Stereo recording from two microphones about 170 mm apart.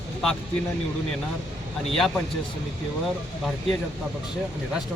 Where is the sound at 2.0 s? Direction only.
Centre (ahead or behind).